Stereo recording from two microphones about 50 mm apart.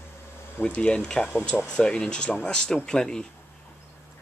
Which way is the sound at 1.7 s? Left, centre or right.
Centre.